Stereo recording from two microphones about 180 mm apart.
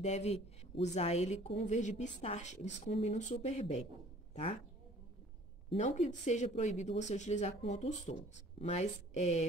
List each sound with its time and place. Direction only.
0.0 s speech: 35° left (ahead or behind)
5.7 s speech: 40° left (ahead or behind)